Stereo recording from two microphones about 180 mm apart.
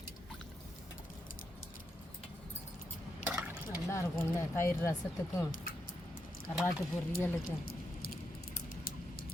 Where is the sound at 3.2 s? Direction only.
10° right (ahead or behind).